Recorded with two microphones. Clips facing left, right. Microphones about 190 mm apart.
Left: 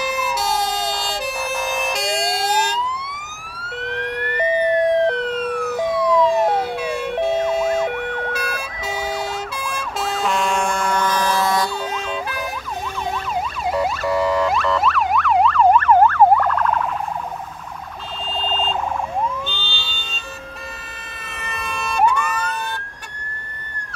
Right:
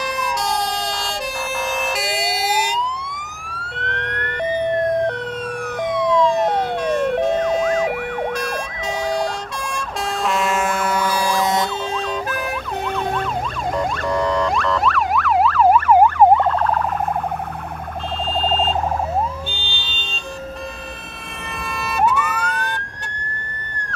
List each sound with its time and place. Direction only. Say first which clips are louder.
1.8 s emergency vehicle: left 1 dB; centre (ahead or behind)
3.6 s emergency vehicle: left 3 dB; 5° left (ahead or behind)
6.1 s ambulance: even; 5° left (ahead or behind)
9.8 s emergency vehicle: even; centre (ahead or behind); by 11.7 s 20° right (ahead or behind)
13.7 s emergency vehicle: left 1 dB; 5° left (ahead or behind); by 16.8 s 30° right (ahead or behind)
18.4 s siren: right 3 dB; 40° right (ahead or behind)
19.5 s emergency vehicle: even; 15° right (ahead or behind)
21.5 s emergency vehicle: even; centre (ahead or behind)